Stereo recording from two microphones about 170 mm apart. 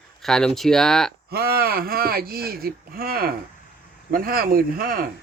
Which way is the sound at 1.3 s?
65° right (ahead or behind).